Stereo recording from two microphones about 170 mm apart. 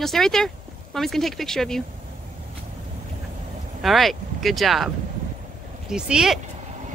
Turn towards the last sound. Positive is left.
turn(degrees=-5)  # may be behind; listen again after turning